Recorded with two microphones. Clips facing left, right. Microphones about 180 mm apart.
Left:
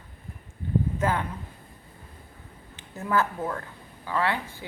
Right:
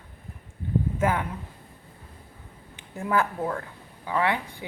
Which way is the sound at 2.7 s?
10° right (ahead or behind).